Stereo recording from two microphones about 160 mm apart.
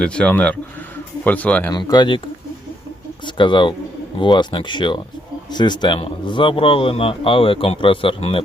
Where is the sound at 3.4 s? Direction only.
30° left (ahead or behind).